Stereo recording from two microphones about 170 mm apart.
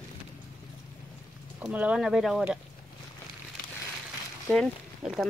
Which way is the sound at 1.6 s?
10° right (ahead or behind).